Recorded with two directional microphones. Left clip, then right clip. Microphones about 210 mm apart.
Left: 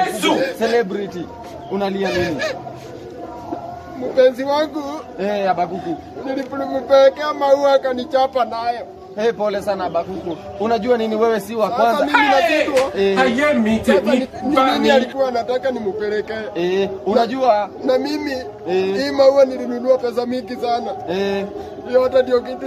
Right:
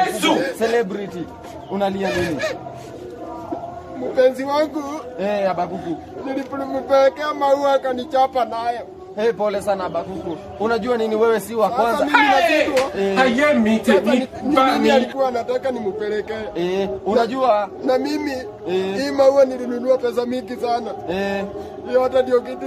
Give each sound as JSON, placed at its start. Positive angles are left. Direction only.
{"t": 0.0, "sound": "a sound", "side_deg": 0}
{"t": 0.6, "sound": "a man's voice", "side_deg": -20}
{"t": 2.1, "sound": "a man's voice", "side_deg": -5}
{"t": 4.1, "sound": "a man's voice", "side_deg": 0}
{"t": 5.2, "sound": "a man's voice", "side_deg": -15}
{"t": 5.9, "sound": "a man's voice", "side_deg": 0}
{"t": 9.2, "sound": "a man's voice", "side_deg": -15}
{"t": 11.9, "sound": "a man's voice", "side_deg": 0}
{"t": 16.5, "sound": "a man's voice", "side_deg": -10}
{"t": 17.8, "sound": "a man's voice", "side_deg": 0}
{"t": 18.7, "sound": "a man's voice", "side_deg": -15}
{"t": 18.9, "sound": "a man's voice", "side_deg": 0}
{"t": 21.1, "sound": "a man's voice", "side_deg": -15}
{"t": 21.9, "sound": "a man's voice", "side_deg": 0}